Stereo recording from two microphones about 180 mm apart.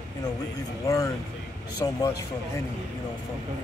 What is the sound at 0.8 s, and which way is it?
Speech, 20° left (ahead or behind).